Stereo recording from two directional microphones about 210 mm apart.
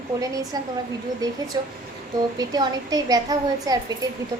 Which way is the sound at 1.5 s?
20° right (ahead or behind).